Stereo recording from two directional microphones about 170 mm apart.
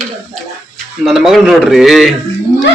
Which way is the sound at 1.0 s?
Centre (ahead or behind).